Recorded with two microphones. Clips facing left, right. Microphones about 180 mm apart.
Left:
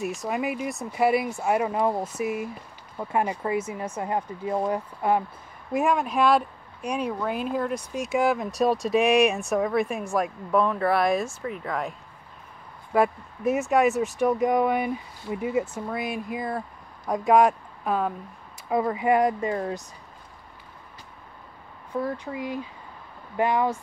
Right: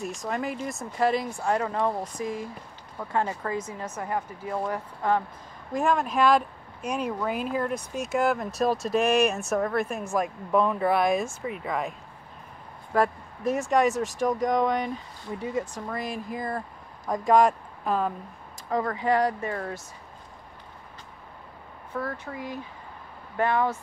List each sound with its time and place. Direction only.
0.1 s speech: 5° left (ahead or behind)
4.5 s speech: 25° left (ahead or behind)
5.7 s speech: 5° left (ahead or behind)
12.9 s speech: 5° left (ahead or behind)
21.9 s speech: 15° left (ahead or behind)